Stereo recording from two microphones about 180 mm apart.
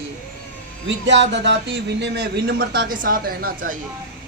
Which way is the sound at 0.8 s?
90° right.